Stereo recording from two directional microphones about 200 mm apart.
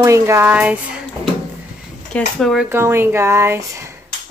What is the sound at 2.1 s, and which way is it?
Speech, centre (ahead or behind).